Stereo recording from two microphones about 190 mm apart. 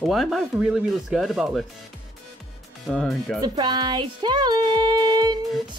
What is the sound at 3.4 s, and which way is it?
Music, 20° right (ahead or behind).